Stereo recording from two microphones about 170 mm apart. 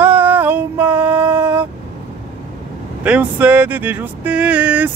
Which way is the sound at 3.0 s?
10° right (ahead or behind).